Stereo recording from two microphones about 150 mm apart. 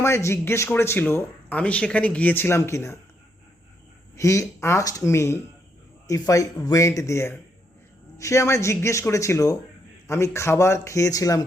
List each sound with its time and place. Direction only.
0.0 s speech: 20° left (ahead or behind)
4.1 s speech: 20° left (ahead or behind)